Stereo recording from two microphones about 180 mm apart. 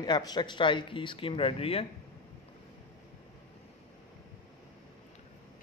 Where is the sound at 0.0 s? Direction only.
25° left (ahead or behind).